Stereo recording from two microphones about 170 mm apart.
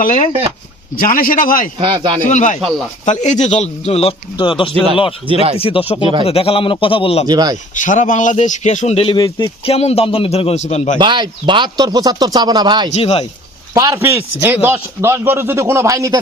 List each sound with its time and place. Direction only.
0.0 s a man's voice: 50° left (ahead or behind)
1.8 s speech: 30° right (ahead or behind)
2.2 s a man's voice: 50° left (ahead or behind)
2.6 s speech: centre (ahead or behind)
3.1 s speech: 45° left (ahead or behind)
5.3 s speech: 35° right (ahead or behind)
5.5 s speech: 35° left (ahead or behind)
7.3 s speech: 25° right (ahead or behind)
7.8 s speech: 50° left (ahead or behind)
11.0 s speech: 25° right (ahead or behind)
12.9 s speech: 35° left (ahead or behind)
13.7 s speech: 15° right (ahead or behind)